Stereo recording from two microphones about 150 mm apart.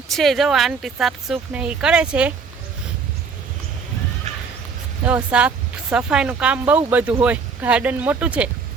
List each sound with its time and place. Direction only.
0.1 s speech: centre (ahead or behind)
4.3 s a sound: 50° right (ahead or behind)
5.0 s speech: 10° right (ahead or behind)